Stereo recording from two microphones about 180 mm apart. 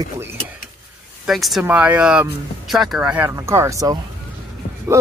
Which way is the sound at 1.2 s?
Centre (ahead or behind).